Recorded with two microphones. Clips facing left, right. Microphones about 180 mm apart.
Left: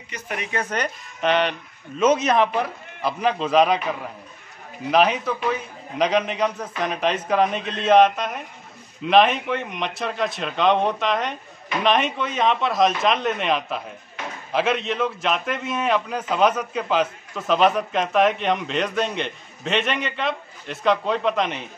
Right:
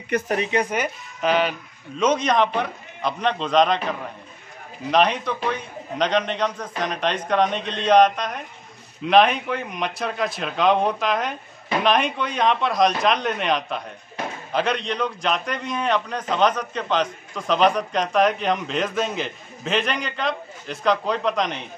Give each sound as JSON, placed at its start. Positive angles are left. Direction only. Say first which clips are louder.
{"t": 0.1, "sound": "speech", "louder": "right 15 dB", "side_deg": -55}
{"t": 0.5, "sound": "a man's voice", "louder": "right 3 dB", "side_deg": -15}
{"t": 4.9, "sound": "a man's voice", "louder": "left 1 dB", "side_deg": 5}